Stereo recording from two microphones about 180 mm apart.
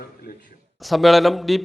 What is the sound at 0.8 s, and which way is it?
Speech, centre (ahead or behind).